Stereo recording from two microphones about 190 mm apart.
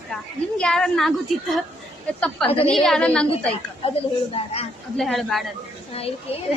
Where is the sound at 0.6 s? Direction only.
5° left (ahead or behind).